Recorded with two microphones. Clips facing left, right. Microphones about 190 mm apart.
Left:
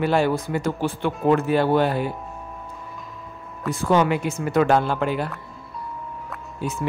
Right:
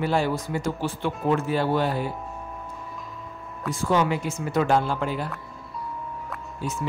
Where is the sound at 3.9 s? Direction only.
60° left (ahead or behind).